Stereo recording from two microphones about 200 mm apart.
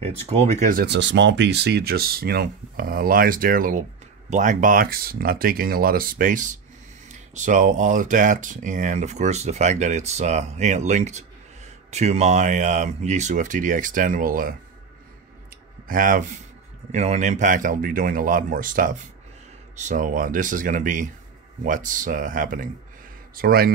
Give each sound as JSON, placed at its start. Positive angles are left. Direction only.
{"t": 0.0, "sound": "speech", "side_deg": -30}
{"t": 0.8, "sound": "speech", "side_deg": -60}
{"t": 15.9, "sound": "speech", "side_deg": -40}